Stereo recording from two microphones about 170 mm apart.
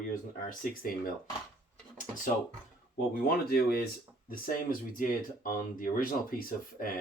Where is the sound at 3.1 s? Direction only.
60° left (ahead or behind).